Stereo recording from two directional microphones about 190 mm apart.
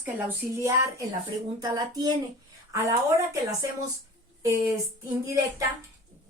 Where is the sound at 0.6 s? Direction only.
15° right (ahead or behind).